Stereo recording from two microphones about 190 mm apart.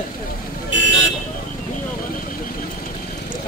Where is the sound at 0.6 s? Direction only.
75° left (ahead or behind).